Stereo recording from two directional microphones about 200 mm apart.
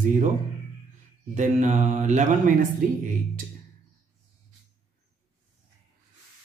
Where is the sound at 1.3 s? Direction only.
40° right (ahead or behind).